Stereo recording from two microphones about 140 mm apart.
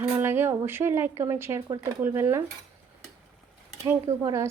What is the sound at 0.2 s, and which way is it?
Speech, 15° right (ahead or behind).